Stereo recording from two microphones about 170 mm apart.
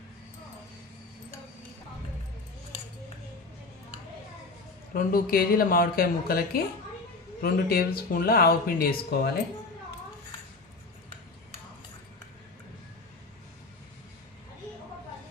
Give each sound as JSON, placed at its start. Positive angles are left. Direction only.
{"t": 4.9, "sound": "speech", "side_deg": 60}